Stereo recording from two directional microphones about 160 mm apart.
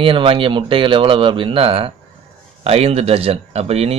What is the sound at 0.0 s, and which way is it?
Speech, 35° right (ahead or behind).